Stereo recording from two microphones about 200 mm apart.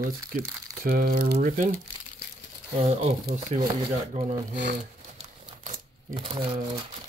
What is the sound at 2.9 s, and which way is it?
Speech, 35° right (ahead or behind).